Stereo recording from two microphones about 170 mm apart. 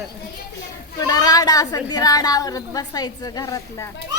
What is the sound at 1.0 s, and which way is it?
A woman's voice, 20° left (ahead or behind).